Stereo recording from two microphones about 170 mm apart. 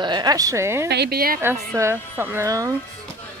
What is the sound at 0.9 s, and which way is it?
Speech, 70° right (ahead or behind).